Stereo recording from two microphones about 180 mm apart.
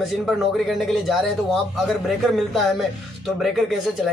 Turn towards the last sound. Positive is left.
turn(degrees=0)  # may be behind; listen again after turning